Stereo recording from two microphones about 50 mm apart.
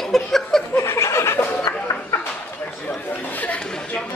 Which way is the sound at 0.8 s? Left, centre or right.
Left.